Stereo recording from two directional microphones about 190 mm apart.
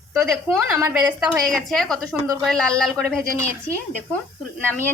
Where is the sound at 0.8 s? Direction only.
5° right (ahead or behind).